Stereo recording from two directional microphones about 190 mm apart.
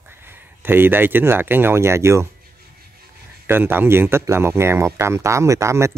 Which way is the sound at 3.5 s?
10° right (ahead or behind).